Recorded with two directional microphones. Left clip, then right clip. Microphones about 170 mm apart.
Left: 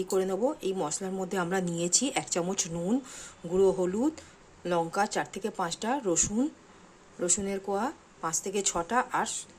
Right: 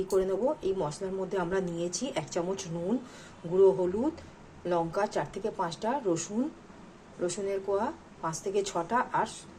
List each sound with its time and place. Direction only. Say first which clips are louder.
0.1 s speech: right 1 dB; 40° left (ahead or behind)